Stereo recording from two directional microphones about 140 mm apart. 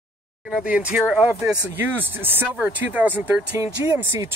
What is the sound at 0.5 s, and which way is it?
Speech, 5° right (ahead or behind).